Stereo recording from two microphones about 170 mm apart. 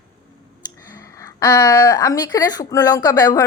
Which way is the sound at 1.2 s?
20° left (ahead or behind).